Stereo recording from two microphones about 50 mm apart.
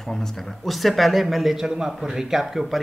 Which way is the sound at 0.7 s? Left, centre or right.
Centre.